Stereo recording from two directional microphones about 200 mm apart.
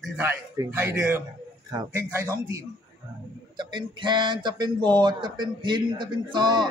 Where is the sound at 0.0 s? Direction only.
10° right (ahead or behind).